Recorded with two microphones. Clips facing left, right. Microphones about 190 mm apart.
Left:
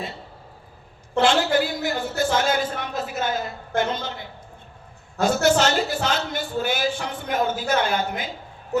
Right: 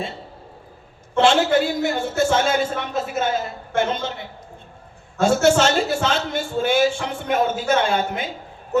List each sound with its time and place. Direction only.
1.1 s a man's voice: 25° right (ahead or behind)
5.2 s a man's voice: 25° right (ahead or behind)